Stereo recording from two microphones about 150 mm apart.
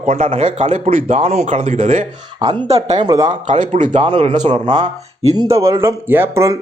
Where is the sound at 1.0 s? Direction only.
45° right (ahead or behind).